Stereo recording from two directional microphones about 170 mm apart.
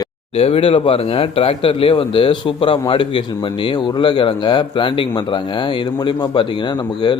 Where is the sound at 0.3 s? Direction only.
35° left (ahead or behind).